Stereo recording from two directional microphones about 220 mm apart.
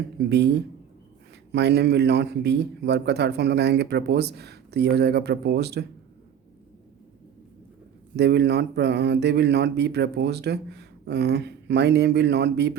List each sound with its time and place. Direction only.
0.3 s speech: 50° right (ahead or behind)
8.1 s speech: 50° right (ahead or behind)